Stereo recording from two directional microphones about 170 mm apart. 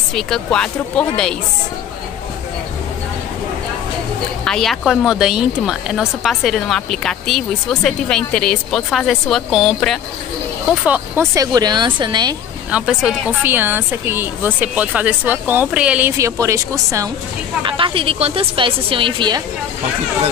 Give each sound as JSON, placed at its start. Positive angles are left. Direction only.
{"t": 0.1, "sound": "speech", "side_deg": 5}
{"t": 4.5, "sound": "speech", "side_deg": 0}
{"t": 10.9, "sound": "speech", "side_deg": -15}
{"t": 12.7, "sound": "speech", "side_deg": -5}
{"t": 17.6, "sound": "a woman's voice", "side_deg": -30}